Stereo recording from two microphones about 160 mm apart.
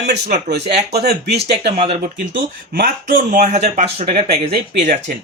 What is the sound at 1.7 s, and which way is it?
Speech, 35° right (ahead or behind).